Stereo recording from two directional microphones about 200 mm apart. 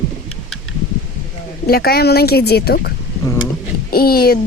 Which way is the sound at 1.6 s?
50° left (ahead or behind).